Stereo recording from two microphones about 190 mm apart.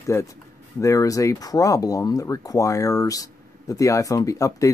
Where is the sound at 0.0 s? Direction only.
15° left (ahead or behind).